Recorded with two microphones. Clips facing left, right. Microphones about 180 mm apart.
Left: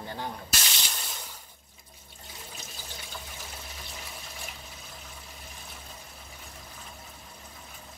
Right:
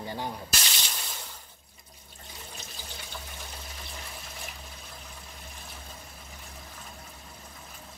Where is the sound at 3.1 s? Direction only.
Centre (ahead or behind).